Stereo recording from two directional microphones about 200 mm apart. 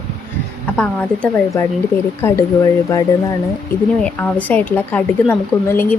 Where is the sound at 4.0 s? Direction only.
10° left (ahead or behind).